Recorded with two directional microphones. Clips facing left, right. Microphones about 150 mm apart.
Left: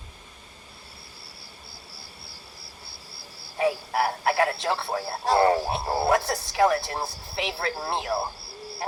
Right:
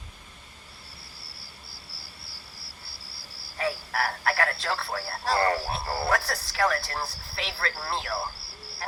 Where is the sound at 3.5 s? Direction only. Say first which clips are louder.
Left 5 dB; 20° left (ahead or behind).